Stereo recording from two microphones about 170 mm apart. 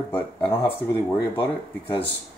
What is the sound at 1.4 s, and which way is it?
Speech, 30° left (ahead or behind).